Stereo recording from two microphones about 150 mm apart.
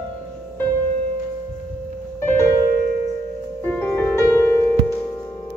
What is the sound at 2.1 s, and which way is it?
Music, 15° left (ahead or behind).